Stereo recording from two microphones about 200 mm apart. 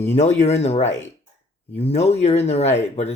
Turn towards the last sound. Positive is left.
turn(degrees=35)  # may be behind; listen again after turning